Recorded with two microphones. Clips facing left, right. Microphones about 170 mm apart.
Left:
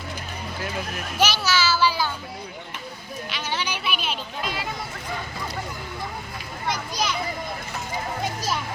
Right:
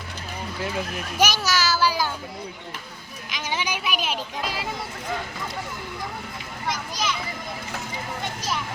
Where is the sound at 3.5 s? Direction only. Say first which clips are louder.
Right 2 dB; 10° right (ahead or behind).